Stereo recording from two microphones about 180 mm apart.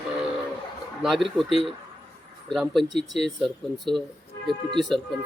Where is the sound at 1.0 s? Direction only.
Centre (ahead or behind).